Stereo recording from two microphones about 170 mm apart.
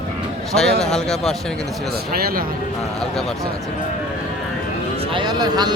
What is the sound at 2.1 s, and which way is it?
Speech, 60° right (ahead or behind).